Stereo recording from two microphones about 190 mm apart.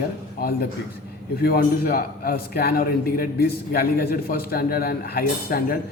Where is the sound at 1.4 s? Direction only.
55° left (ahead or behind).